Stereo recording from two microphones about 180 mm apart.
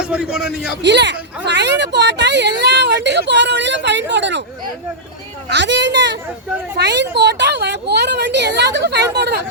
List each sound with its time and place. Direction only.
0.0 s a man's voice: 5° right (ahead or behind)
0.8 s speech: 75° right (ahead or behind)
5.5 s speech: 75° right (ahead or behind)